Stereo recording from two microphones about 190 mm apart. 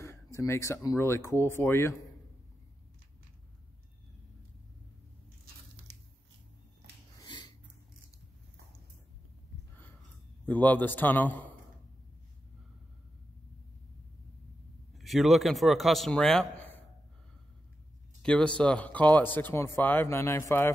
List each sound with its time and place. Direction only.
0.0 s speech: 15° left (ahead or behind)
7.2 s a sound: 25° left (ahead or behind)
10.4 s speech: 10° left (ahead or behind)
15.0 s a man's voice: centre (ahead or behind)
18.2 s speech: 5° left (ahead or behind)